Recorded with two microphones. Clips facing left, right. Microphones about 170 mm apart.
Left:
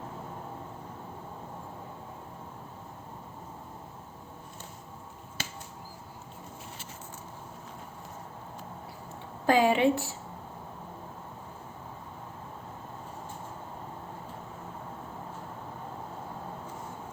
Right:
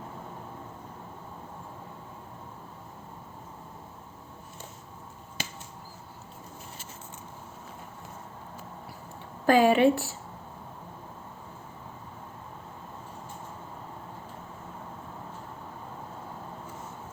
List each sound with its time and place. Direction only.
5.4 s finger snapping: 15° right (ahead or behind)
9.5 s a woman's voice: 15° left (ahead or behind)